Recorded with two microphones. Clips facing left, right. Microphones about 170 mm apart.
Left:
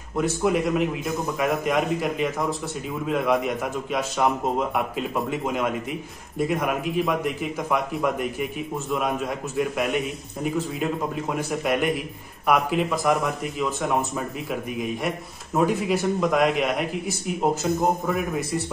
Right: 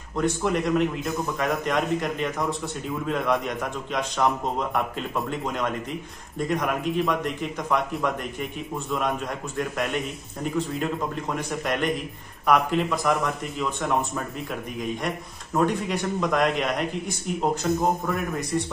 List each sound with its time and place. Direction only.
0.1 s a man's voice: 5° left (ahead or behind)
18.0 s a man's voice: centre (ahead or behind)